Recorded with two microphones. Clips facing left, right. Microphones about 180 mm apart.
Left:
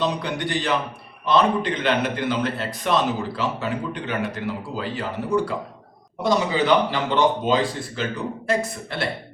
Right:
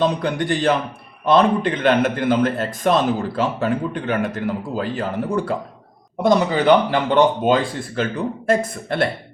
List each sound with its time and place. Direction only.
0.0 s a man's voice: 50° right (ahead or behind)